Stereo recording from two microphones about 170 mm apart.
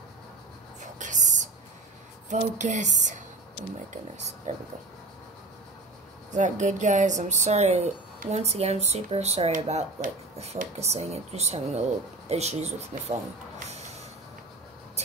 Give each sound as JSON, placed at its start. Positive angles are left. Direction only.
{"t": 0.9, "sound": "a sound", "side_deg": -45}
{"t": 2.2, "sound": "speech", "side_deg": -45}
{"t": 4.5, "sound": "speech", "side_deg": -45}
{"t": 6.3, "sound": "a woman's voice", "side_deg": -45}
{"t": 13.7, "sound": "snort", "side_deg": -40}